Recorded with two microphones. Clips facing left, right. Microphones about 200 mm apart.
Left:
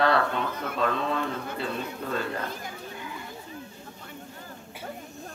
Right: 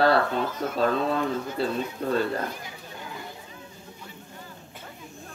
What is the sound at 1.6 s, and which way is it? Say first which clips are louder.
Speech: right 6 dB; 35° right (ahead or behind).